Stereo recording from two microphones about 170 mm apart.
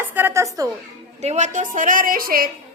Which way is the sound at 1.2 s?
40° right (ahead or behind).